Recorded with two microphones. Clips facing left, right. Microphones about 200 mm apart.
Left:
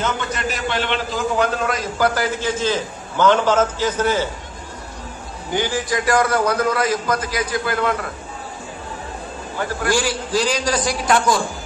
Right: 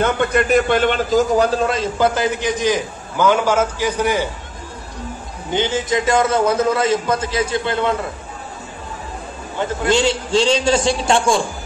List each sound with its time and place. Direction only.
0.0 s a man's voice: 55° right (ahead or behind); by 4.3 s 15° right (ahead or behind)
5.5 s a man's voice: 20° right (ahead or behind)
9.6 s a man's voice: 20° right (ahead or behind)